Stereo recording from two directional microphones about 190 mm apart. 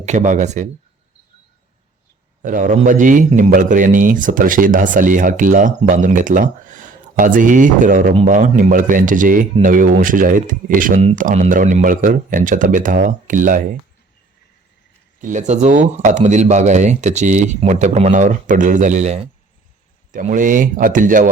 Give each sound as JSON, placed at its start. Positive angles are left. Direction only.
{"t": 0.0, "sound": "speech", "side_deg": -40}
{"t": 2.4, "sound": "a man's voice", "side_deg": -40}
{"t": 15.2, "sound": "a man's voice", "side_deg": -40}